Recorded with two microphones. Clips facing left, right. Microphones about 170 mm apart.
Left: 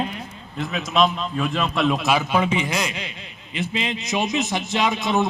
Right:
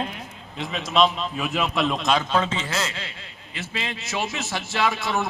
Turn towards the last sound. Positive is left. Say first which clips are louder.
# left 3 dB
turn(degrees=20)  # may be behind; listen again after turning